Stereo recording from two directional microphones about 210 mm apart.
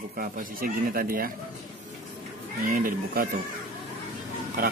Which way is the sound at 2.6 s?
45° right (ahead or behind).